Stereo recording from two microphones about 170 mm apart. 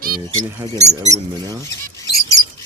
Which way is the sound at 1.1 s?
20° right (ahead or behind).